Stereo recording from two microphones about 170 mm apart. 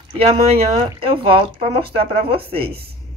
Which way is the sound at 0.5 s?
35° right (ahead or behind).